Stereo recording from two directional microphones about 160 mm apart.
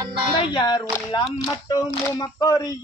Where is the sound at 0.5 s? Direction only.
25° left (ahead or behind).